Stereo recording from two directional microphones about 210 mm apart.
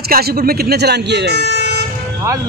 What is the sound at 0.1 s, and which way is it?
Speech, 45° right (ahead or behind).